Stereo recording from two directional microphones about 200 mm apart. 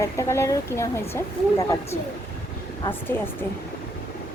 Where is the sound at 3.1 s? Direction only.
10° left (ahead or behind).